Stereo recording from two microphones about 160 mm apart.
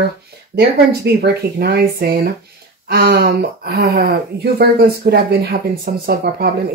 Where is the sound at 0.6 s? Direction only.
90° right.